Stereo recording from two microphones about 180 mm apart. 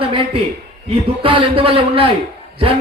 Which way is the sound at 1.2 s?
30° right (ahead or behind).